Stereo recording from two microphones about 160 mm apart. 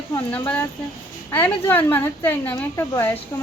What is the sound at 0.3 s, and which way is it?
Speech, 10° left (ahead or behind).